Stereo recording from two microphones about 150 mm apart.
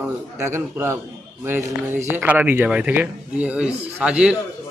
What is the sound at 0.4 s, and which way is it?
Speech, 15° right (ahead or behind).